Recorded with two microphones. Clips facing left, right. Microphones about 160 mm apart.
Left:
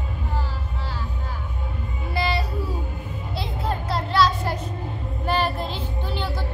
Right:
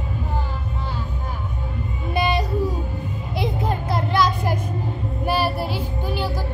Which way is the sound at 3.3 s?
15° right (ahead or behind).